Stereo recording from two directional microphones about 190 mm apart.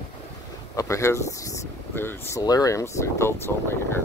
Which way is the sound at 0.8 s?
15° left (ahead or behind).